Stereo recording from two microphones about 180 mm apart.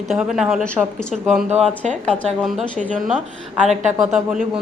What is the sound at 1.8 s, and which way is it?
Speech, 40° right (ahead or behind).